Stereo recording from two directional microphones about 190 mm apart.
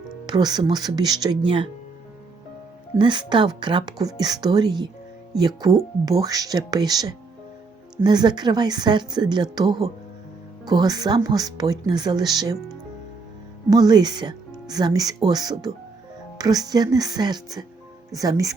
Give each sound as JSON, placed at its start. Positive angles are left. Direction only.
{"t": 0.3, "sound": "speech", "side_deg": -20}
{"t": 3.0, "sound": "speech", "side_deg": -25}
{"t": 13.7, "sound": "speech", "side_deg": -20}